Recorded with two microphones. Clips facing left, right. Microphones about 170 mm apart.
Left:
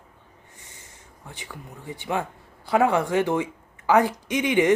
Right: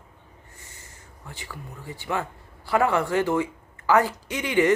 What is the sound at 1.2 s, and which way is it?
Speech, 20° left (ahead or behind).